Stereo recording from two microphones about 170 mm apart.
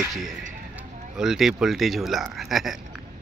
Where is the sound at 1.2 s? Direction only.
5° right (ahead or behind).